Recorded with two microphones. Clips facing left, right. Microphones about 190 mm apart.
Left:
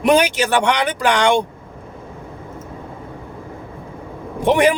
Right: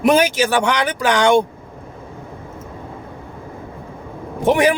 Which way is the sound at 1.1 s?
45° right (ahead or behind).